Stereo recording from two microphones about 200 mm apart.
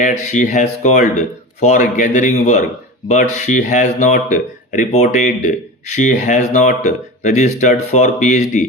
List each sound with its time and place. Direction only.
0.0 s speech: 40° left (ahead or behind)